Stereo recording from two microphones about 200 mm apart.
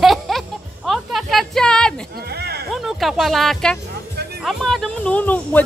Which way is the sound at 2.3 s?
55° right (ahead or behind).